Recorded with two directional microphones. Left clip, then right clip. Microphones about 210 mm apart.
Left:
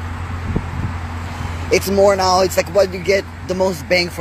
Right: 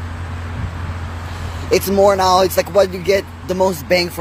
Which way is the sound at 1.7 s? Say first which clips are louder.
Even; 15° right (ahead or behind).